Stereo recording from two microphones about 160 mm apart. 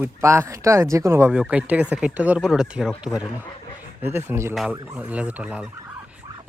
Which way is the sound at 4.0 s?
15° right (ahead or behind).